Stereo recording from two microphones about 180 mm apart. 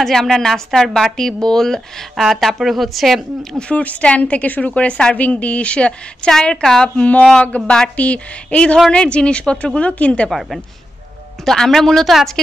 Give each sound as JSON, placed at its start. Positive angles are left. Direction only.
{"t": 0.0, "sound": "speech", "side_deg": 0}